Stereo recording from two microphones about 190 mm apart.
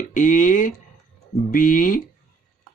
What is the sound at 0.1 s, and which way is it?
Speech, 45° left (ahead or behind).